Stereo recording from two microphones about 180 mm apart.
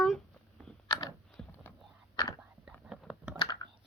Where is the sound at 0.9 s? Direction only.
25° left (ahead or behind).